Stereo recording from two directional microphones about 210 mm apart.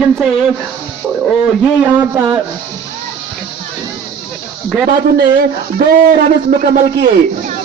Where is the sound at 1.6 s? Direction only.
5° right (ahead or behind).